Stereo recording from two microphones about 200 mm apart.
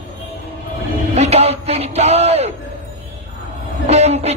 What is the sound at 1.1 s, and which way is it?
Speech, 30° right (ahead or behind).